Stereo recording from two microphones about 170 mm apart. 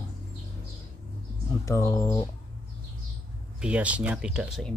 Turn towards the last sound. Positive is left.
turn(degrees=-5)  # may be behind; listen again after turning